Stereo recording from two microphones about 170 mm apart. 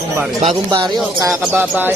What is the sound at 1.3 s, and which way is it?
Speech, 5° right (ahead or behind).